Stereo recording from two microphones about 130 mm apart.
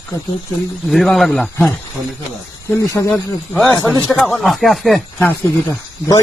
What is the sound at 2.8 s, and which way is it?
Speech, 20° left (ahead or behind).